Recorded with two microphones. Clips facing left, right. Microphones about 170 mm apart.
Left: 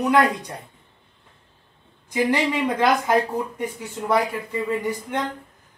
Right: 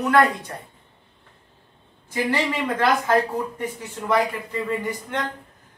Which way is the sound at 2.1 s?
15° left (ahead or behind).